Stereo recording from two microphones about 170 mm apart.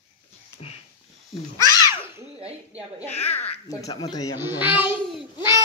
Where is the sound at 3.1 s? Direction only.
40° left (ahead or behind).